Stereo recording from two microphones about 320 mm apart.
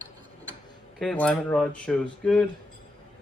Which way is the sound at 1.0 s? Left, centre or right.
Centre.